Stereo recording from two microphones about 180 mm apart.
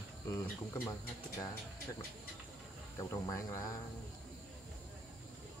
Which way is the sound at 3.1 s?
20° left (ahead or behind).